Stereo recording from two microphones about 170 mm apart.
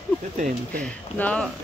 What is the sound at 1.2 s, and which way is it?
Speech, 5° left (ahead or behind).